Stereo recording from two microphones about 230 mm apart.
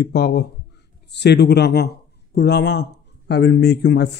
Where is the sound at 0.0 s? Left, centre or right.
Left.